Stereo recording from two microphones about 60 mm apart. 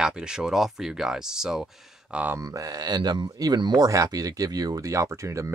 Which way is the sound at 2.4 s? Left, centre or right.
Right.